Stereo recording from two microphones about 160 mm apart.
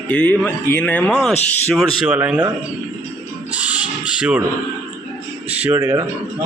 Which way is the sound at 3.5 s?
10° right (ahead or behind).